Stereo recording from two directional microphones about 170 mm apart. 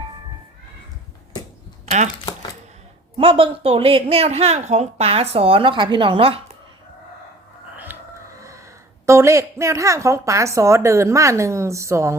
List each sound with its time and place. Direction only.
3.2 s a woman's voice: 35° right (ahead or behind)
8.4 s a sound: 20° right (ahead or behind)
9.0 s a woman's voice: 15° right (ahead or behind)